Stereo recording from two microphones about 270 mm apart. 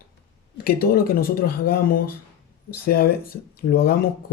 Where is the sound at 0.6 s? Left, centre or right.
Left.